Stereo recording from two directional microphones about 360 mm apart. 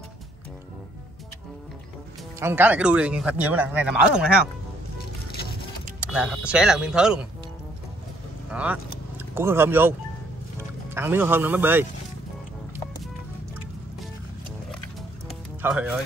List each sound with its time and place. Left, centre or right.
2.4 s speech: centre
5.3 s music: left
5.9 s speech: centre
8.5 s speech: centre
11.0 s speech: centre
14.7 s music: centre